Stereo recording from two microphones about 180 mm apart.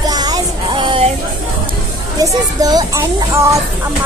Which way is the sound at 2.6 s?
20° right (ahead or behind).